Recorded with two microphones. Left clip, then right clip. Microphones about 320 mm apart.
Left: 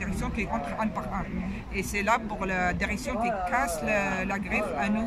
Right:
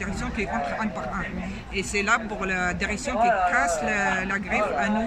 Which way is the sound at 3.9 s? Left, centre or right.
Centre.